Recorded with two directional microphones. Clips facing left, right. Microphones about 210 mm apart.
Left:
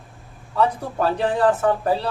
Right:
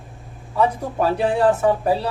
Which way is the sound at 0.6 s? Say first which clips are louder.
Right 1 dB; 10° right (ahead or behind).